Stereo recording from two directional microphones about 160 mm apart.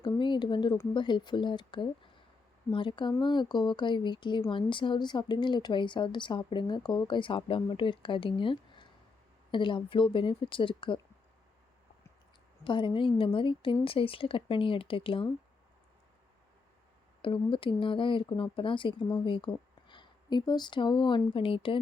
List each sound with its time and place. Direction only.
0.2 s a sound: 30° left (ahead or behind)
0.9 s speech: 30° left (ahead or behind)
12.6 s speech: 30° left (ahead or behind)
17.2 s speech: 30° left (ahead or behind)